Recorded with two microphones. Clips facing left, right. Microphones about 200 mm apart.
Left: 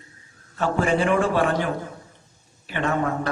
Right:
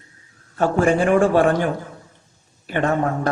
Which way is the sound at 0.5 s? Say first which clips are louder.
Right 4 dB; 45° right (ahead or behind).